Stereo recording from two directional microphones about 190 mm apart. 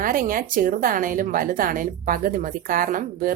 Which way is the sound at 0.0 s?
45° right (ahead or behind).